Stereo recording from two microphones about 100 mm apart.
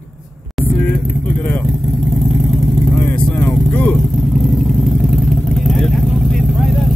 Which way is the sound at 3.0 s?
15° left (ahead or behind).